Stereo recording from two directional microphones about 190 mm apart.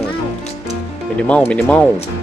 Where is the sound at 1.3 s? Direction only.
5° left (ahead or behind).